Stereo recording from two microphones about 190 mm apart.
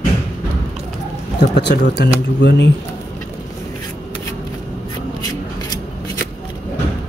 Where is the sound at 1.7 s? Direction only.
55° left (ahead or behind).